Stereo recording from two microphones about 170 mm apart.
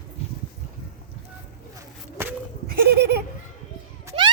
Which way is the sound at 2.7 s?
70° right (ahead or behind).